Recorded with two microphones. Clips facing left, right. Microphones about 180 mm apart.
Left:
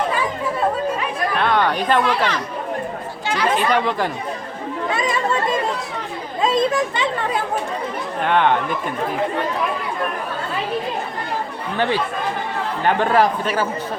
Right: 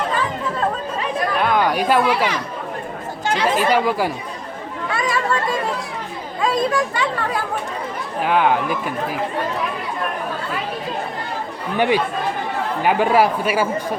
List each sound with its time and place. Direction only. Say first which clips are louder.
0.1 s chatter: left 1 dB; 10° left (ahead or behind)
1.4 s a sound: even; 5° right (ahead or behind)
3.4 s speech: right 1 dB; 10° right (ahead or behind)
4.9 s chatter: even; 20° left (ahead or behind)
6.4 s speech: left 1 dB; 20° left (ahead or behind)
8.2 s speech: even; 5° right (ahead or behind)
11.8 s speech: right 3 dB; 15° right (ahead or behind)